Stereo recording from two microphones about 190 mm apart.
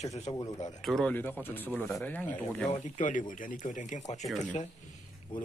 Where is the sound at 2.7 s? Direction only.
40° left (ahead or behind).